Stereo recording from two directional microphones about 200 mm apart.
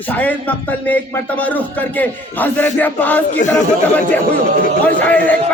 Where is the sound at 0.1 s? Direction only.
10° left (ahead or behind).